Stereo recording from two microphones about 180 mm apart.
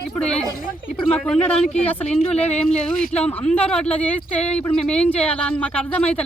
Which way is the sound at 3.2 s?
5° left (ahead or behind).